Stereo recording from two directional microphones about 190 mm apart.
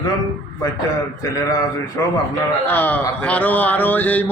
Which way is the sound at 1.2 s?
20° left (ahead or behind).